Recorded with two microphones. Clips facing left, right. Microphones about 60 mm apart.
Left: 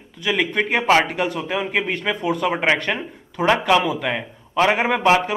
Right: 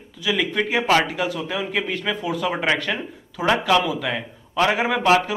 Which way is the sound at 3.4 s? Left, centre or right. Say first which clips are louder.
Left 3 dB; left.